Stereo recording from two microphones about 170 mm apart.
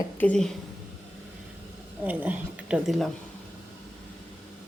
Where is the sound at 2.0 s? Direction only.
10° right (ahead or behind).